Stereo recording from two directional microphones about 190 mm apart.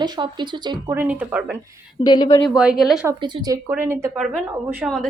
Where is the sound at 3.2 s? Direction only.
20° right (ahead or behind).